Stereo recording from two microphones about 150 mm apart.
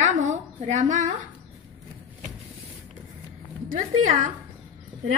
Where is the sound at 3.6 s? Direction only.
65° right (ahead or behind).